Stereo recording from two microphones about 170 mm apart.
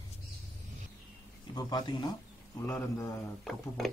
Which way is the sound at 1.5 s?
25° left (ahead or behind).